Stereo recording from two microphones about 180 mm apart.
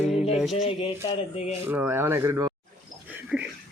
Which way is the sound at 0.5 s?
30° left (ahead or behind).